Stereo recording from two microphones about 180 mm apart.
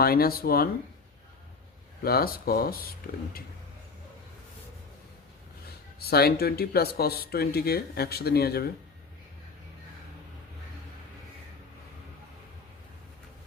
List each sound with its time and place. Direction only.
0.0 s speech: 60° left (ahead or behind)
2.0 s speech: 55° left (ahead or behind)
6.1 s speech: 60° left (ahead or behind)